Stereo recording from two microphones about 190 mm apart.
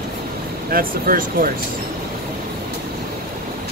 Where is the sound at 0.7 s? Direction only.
50° right (ahead or behind).